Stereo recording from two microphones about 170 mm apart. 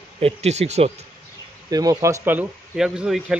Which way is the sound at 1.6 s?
20° right (ahead or behind).